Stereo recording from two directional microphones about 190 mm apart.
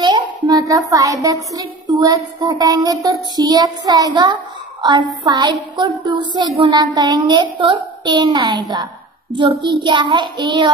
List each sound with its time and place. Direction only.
0.0 s child singing: 20° right (ahead or behind)